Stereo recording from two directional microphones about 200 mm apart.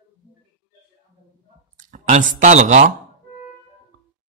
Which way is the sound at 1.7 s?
40° right (ahead or behind).